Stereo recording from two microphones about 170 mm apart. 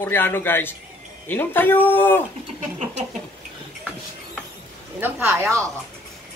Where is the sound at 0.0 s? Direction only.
15° left (ahead or behind).